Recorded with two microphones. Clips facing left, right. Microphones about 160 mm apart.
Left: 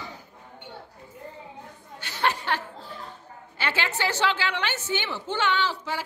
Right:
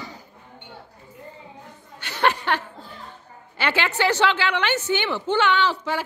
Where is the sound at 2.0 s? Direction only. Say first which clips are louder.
Right 5 dB; 65° right (ahead or behind).